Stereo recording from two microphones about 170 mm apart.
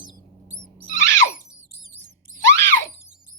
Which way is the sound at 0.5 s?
10° left (ahead or behind).